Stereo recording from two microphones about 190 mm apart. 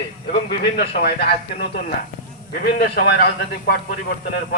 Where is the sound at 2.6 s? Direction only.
55° left (ahead or behind).